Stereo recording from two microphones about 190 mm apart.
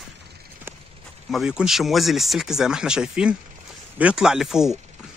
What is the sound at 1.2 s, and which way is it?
Speech, centre (ahead or behind).